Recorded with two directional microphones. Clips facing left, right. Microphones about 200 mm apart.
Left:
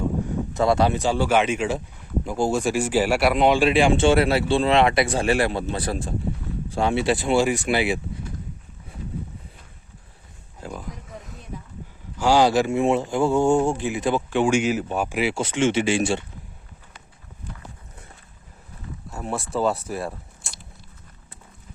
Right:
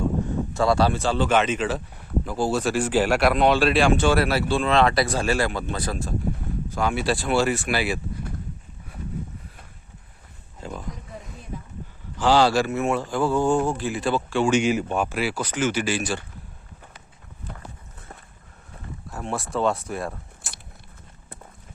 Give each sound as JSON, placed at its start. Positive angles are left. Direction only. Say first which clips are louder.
{"t": 0.5, "sound": "speech", "louder": "left 1 dB", "side_deg": 20}
{"t": 10.6, "sound": "a sound", "louder": "even", "side_deg": 5}
{"t": 12.1, "sound": "speech", "louder": "left 1 dB", "side_deg": 10}
{"t": 14.6, "sound": "speech", "louder": "right 1 dB", "side_deg": 5}
{"t": 15.2, "sound": "speech", "louder": "left 3 dB", "side_deg": 25}
{"t": 17.5, "sound": "walk", "louder": "right 1 dB", "side_deg": -55}
{"t": 19.1, "sound": "speech", "louder": "left 1 dB", "side_deg": 0}